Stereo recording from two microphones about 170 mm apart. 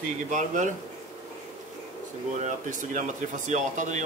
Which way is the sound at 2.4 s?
50° right (ahead or behind).